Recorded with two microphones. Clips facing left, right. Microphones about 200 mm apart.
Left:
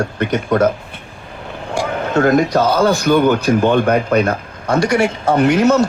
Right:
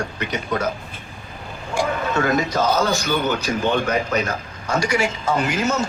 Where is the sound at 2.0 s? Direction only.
55° left (ahead or behind).